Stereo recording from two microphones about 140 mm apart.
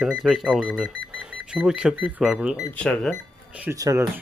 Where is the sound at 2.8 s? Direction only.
10° left (ahead or behind).